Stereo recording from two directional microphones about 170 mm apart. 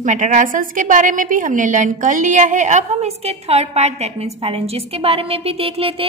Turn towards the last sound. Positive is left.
turn(degrees=-35)  # may be behind; listen again after turning